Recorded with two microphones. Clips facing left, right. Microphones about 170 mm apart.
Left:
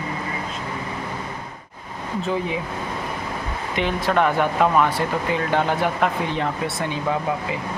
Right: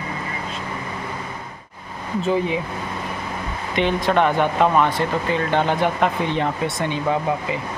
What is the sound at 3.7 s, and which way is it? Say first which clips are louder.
Speech: right 3 dB; 5° left (ahead or behind).